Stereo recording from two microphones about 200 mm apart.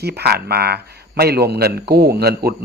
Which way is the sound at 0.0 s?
55° right (ahead or behind).